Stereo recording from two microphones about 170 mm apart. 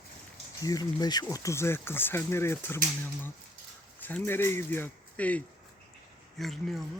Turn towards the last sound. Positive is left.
turn(degrees=0)  # may be behind; listen again after turning